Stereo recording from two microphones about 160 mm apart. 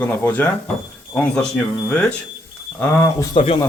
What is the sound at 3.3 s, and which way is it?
Speech, 35° left (ahead or behind).